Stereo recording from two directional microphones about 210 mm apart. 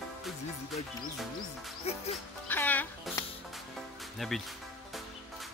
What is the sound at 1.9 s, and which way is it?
Music, 30° left (ahead or behind).